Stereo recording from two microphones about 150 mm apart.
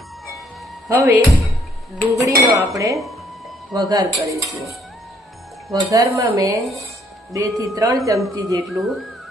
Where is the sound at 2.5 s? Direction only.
20° right (ahead or behind).